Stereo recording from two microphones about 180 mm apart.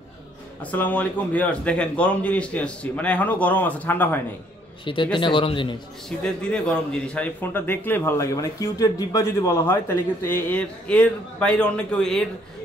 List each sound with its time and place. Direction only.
0.6 s a man's voice: 10° left (ahead or behind)
4.8 s speech: 25° left (ahead or behind)
6.0 s a man's voice: 5° left (ahead or behind)